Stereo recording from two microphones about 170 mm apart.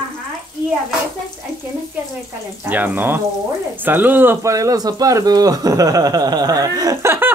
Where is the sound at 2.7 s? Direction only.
10° right (ahead or behind).